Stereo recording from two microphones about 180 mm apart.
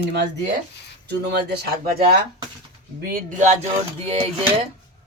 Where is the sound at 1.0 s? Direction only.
65° right (ahead or behind); by 4.3 s 35° right (ahead or behind).